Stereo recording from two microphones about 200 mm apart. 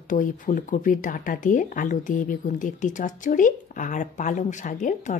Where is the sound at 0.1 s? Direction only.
40° left (ahead or behind).